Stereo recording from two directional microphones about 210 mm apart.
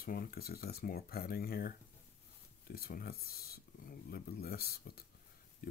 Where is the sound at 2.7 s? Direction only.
45° left (ahead or behind).